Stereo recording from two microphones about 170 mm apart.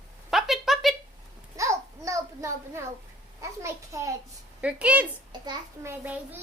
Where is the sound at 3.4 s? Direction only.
15° right (ahead or behind).